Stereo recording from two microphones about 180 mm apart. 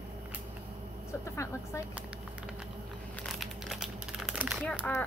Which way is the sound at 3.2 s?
Centre (ahead or behind).